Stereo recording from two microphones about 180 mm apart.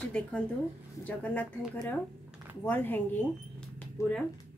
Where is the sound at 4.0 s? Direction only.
15° left (ahead or behind).